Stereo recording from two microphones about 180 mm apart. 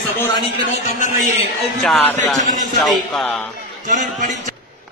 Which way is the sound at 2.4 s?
45° right (ahead or behind).